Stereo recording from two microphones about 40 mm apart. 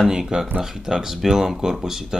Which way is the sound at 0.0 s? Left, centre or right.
Centre.